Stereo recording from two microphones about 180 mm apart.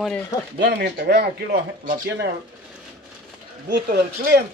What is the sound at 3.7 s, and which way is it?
Speech, 65° right (ahead or behind).